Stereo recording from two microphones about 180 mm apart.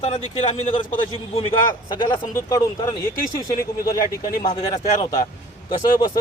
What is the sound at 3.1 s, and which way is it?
Speech, 55° left (ahead or behind).